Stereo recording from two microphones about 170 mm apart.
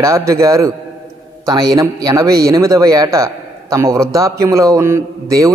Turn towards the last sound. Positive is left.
turn(degrees=-15)  # may be behind; listen again after turning